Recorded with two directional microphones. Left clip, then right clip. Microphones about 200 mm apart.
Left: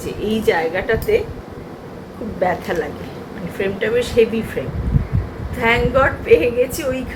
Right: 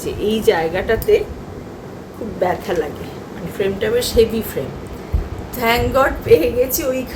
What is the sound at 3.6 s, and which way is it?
Speech, 15° right (ahead or behind).